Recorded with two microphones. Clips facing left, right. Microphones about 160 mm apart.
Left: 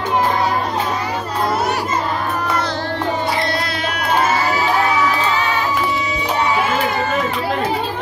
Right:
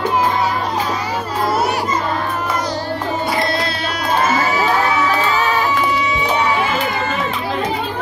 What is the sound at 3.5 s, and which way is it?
Music, 30° right (ahead or behind).